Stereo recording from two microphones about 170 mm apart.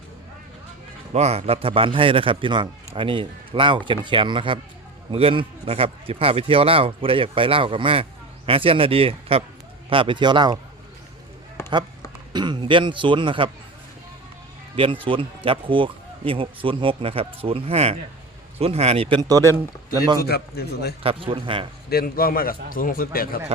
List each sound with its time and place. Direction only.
1.1 s a man's voice: 40° right (ahead or behind)
11.6 s a sound: 15° left (ahead or behind)
12.3 s a man's voice: 25° right (ahead or behind)
14.8 s speech: 30° right (ahead or behind)
20.2 s a man's voice: 70° left (ahead or behind)
21.0 s speech: 35° right (ahead or behind)
21.8 s speech: 65° left (ahead or behind)